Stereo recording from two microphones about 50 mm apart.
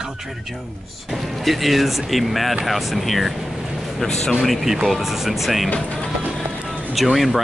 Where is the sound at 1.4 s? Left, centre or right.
Centre.